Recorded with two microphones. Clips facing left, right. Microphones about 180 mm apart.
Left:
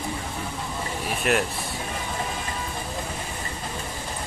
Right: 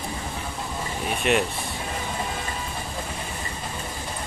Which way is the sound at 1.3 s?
Centre (ahead or behind).